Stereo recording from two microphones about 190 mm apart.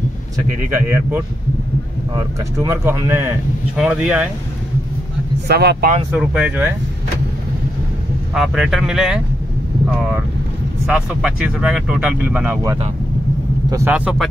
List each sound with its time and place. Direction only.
0.7 s speech: 10° right (ahead or behind)
5.5 s speech: 60° right (ahead or behind)
6.1 s speech: 5° right (ahead or behind)
8.4 s speech: centre (ahead or behind)
10.9 s speech: 5° right (ahead or behind)